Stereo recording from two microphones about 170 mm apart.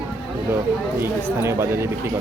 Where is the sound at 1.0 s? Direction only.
15° right (ahead or behind).